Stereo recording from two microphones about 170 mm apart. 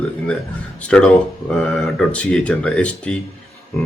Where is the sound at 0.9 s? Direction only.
5° left (ahead or behind).